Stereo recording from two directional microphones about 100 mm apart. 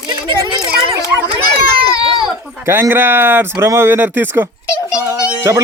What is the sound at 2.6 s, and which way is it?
Speech, 25° right (ahead or behind).